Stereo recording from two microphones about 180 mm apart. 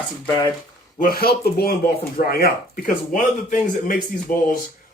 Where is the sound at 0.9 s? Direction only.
55° left (ahead or behind).